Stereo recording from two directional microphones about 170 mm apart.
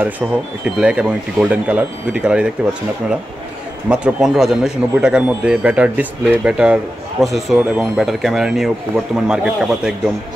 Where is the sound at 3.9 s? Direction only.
5° right (ahead or behind).